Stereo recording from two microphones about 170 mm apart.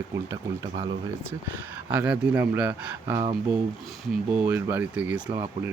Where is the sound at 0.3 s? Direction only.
20° right (ahead or behind).